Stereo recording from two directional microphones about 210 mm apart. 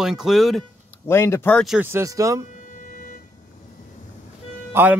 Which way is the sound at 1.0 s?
10° left (ahead or behind).